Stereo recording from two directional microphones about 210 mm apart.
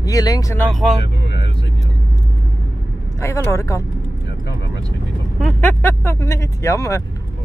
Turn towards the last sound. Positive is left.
turn(degrees=15)  # may be behind; listen again after turning